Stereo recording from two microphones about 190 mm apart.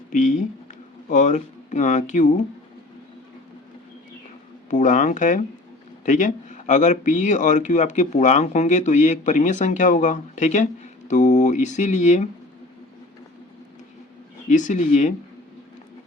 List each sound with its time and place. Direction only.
0.1 s speech: 40° left (ahead or behind)
4.7 s speech: 40° left (ahead or behind)
14.5 s speech: 40° left (ahead or behind)